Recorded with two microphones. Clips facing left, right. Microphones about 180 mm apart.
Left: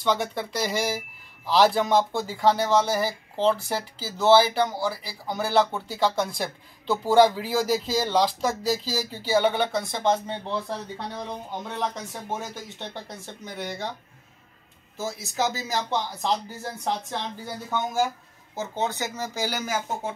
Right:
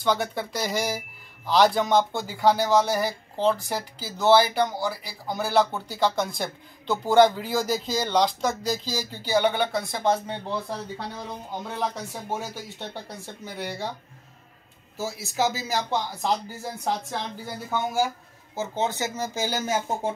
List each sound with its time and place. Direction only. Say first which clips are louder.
0.0 s speech: even; centre (ahead or behind)
15.0 s speech: even; 20° left (ahead or behind)
15.7 s speech: right 1 dB; 10° right (ahead or behind); by 20.1 s 25° right (ahead or behind)